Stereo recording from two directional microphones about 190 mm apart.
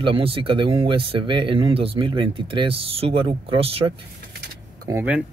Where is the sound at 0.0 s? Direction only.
30° right (ahead or behind).